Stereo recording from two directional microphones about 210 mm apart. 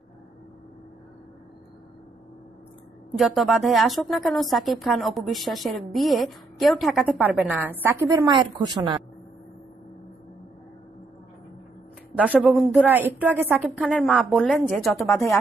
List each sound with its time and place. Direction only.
3.1 s a woman's voice: centre (ahead or behind); by 8.7 s 20° right (ahead or behind)
12.2 s a woman's voice: 5° right (ahead or behind)